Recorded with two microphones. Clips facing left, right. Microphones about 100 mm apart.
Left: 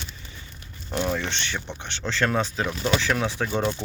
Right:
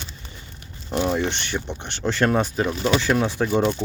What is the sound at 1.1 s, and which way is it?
Speech, 15° right (ahead or behind).